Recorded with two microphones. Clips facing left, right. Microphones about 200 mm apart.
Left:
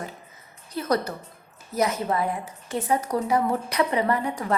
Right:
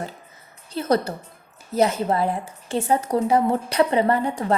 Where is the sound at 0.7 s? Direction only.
30° right (ahead or behind).